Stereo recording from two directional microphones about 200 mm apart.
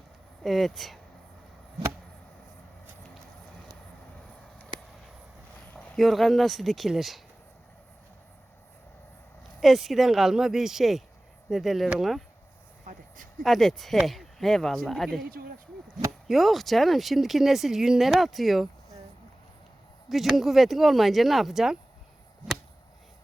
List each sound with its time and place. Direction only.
0.4 s speech: centre (ahead or behind)
5.7 s speech: centre (ahead or behind)
9.6 s speech: centre (ahead or behind)
12.8 s a sound: 40° right (ahead or behind)
13.4 s speech: centre (ahead or behind)
15.3 s speech: 45° right (ahead or behind)
16.2 s speech: centre (ahead or behind)
20.1 s speech: centre (ahead or behind)